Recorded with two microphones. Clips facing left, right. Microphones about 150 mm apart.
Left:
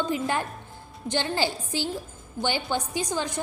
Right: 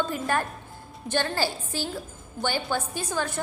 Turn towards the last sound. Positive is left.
turn(degrees=15)  # may be behind; listen again after turning